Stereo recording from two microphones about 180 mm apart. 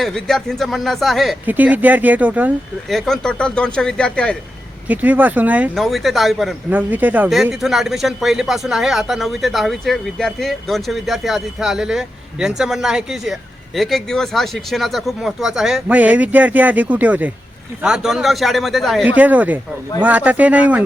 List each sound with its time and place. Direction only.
0.0 s speech: 5° left (ahead or behind)
2.9 s speech: 5° left (ahead or behind)
4.9 s speech: 10° right (ahead or behind)